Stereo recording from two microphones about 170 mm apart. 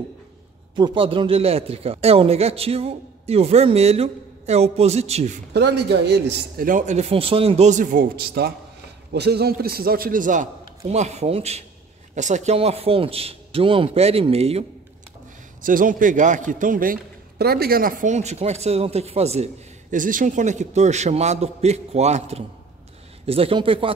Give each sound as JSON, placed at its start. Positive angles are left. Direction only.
{"t": 0.7, "sound": "speech", "side_deg": -30}
{"t": 5.5, "sound": "a man's voice", "side_deg": -80}
{"t": 6.7, "sound": "a man's voice", "side_deg": -40}
{"t": 15.6, "sound": "a man's voice", "side_deg": -55}